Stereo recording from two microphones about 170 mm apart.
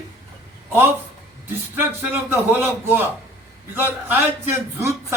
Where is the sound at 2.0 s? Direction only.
15° right (ahead or behind).